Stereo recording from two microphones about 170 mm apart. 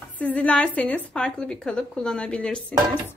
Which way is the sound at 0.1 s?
10° left (ahead or behind).